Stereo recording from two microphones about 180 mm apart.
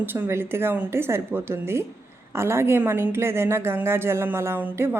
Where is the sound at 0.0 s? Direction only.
10° right (ahead or behind).